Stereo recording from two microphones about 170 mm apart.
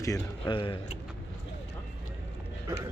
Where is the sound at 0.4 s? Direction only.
30° left (ahead or behind).